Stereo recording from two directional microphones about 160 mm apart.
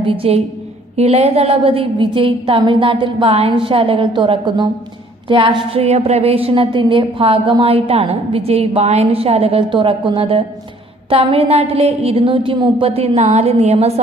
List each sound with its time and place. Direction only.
0.0 s a woman's voice: 35° right (ahead or behind)